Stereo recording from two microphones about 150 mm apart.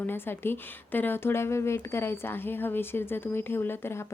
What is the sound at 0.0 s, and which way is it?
A woman's voice, 15° left (ahead or behind).